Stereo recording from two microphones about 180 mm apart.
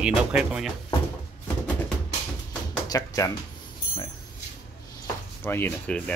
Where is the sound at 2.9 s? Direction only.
20° left (ahead or behind).